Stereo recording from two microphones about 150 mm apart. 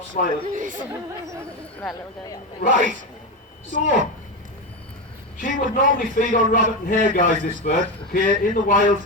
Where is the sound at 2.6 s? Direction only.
65° left (ahead or behind).